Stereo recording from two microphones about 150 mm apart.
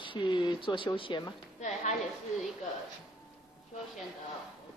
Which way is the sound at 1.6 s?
50° left (ahead or behind).